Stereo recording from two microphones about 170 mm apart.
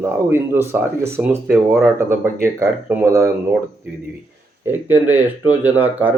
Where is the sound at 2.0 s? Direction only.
15° right (ahead or behind).